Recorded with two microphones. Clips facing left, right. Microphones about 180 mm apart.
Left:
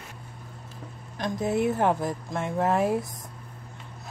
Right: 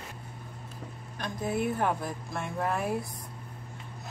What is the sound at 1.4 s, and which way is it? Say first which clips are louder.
Speech: left 4 dB; 80° left.